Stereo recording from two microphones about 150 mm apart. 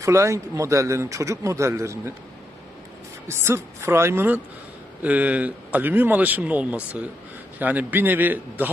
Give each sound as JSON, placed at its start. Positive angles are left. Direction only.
{"t": 0.0, "sound": "speech", "side_deg": -20}
{"t": 3.2, "sound": "speech", "side_deg": -15}